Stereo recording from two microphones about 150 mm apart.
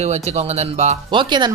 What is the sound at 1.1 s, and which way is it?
Speech, 30° right (ahead or behind).